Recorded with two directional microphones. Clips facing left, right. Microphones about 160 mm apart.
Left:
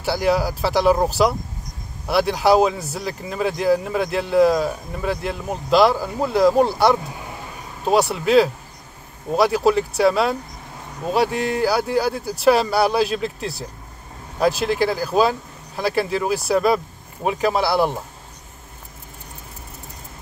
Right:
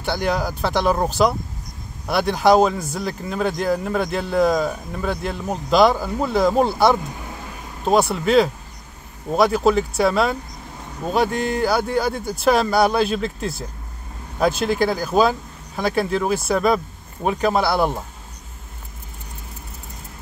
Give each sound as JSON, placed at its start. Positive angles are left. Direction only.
{"t": 0.0, "sound": "speech", "side_deg": 5}